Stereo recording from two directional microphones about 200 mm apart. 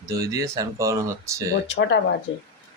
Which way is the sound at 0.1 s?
15° right (ahead or behind).